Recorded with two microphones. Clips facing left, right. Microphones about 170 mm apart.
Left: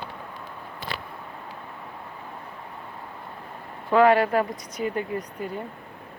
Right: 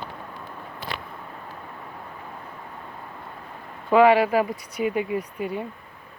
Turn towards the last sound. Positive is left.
turn(degrees=-10)  # may be behind; listen again after turning